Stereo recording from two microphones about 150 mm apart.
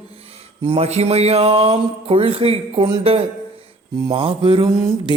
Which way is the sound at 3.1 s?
40° right (ahead or behind).